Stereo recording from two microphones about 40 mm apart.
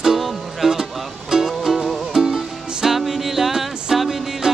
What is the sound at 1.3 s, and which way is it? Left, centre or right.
Music, centre.